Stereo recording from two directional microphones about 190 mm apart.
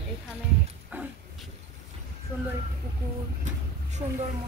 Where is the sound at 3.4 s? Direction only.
40° right (ahead or behind).